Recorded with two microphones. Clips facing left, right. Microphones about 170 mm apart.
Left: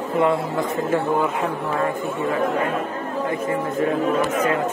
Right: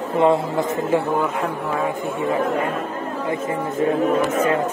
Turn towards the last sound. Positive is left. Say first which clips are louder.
# right 2 dB
turn(degrees=-30)  # may be behind; listen again after turning